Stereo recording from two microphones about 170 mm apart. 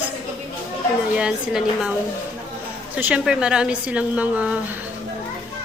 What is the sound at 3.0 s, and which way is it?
A woman's voice, 5° right (ahead or behind).